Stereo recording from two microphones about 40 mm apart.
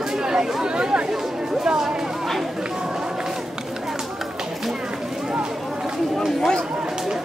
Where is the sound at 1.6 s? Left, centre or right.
Centre.